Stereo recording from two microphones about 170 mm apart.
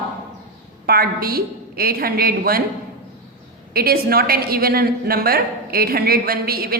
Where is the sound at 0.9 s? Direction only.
60° right (ahead or behind).